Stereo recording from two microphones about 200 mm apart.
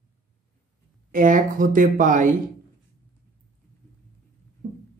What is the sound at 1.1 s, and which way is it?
Speech, 40° right (ahead or behind).